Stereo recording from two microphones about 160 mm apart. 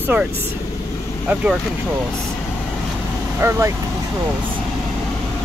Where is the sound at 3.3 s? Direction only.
15° right (ahead or behind).